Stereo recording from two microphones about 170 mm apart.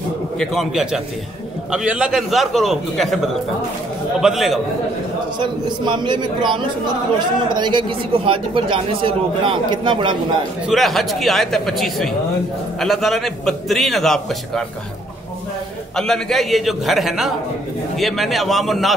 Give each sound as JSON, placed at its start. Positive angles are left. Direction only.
{"t": 0.4, "sound": "a man's voice", "side_deg": 0}
{"t": 4.2, "sound": "a man's voice", "side_deg": 0}
{"t": 5.4, "sound": "speech", "side_deg": -25}
{"t": 10.7, "sound": "a man's voice", "side_deg": 0}
{"t": 16.0, "sound": "a man's voice", "side_deg": 0}